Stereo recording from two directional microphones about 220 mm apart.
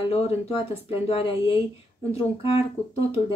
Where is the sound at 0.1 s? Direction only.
25° left (ahead or behind).